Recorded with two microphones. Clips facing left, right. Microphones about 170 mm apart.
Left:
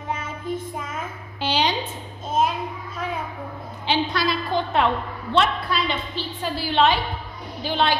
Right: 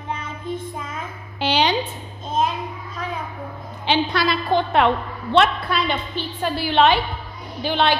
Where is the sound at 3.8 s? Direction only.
65° right (ahead or behind).